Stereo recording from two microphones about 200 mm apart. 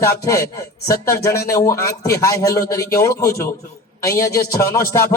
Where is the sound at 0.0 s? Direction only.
15° left (ahead or behind).